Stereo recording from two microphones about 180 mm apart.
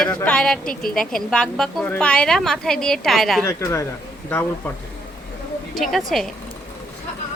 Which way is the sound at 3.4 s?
15° left (ahead or behind).